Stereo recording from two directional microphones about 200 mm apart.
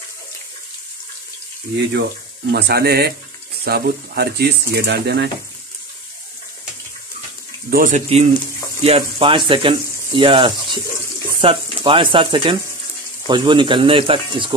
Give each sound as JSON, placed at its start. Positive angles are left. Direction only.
{"t": 2.5, "sound": "speech", "side_deg": -50}
{"t": 7.7, "sound": "speech", "side_deg": -40}